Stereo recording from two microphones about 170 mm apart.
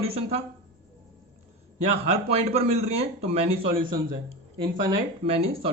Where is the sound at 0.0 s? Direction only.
35° right (ahead or behind).